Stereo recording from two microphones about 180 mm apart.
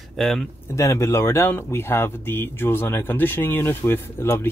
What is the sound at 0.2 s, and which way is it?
Speech, centre (ahead or behind).